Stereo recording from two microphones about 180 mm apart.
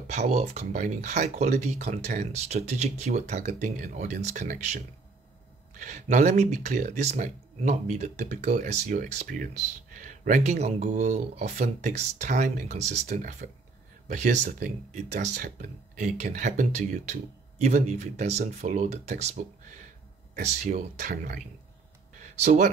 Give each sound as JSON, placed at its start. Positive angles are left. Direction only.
{"t": 0.0, "sound": "speech", "side_deg": -40}
{"t": 22.2, "sound": "speech", "side_deg": -40}